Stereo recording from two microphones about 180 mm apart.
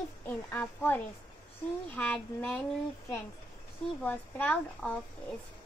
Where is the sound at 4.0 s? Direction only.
10° left (ahead or behind).